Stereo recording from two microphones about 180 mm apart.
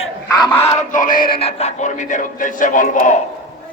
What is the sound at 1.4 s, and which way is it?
A man's voice, 35° left (ahead or behind).